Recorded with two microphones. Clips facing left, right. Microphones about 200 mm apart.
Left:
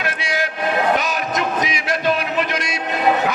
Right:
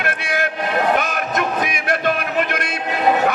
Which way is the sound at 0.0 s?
55° right (ahead or behind).